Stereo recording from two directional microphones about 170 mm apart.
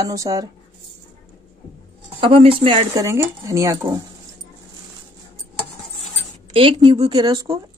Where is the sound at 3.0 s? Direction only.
15° right (ahead or behind).